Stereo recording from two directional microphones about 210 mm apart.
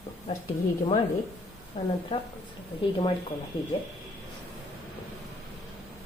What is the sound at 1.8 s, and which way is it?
Speech, 25° left (ahead or behind).